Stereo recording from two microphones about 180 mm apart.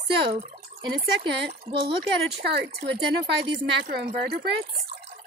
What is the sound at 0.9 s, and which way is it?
Speech, 70° right (ahead or behind).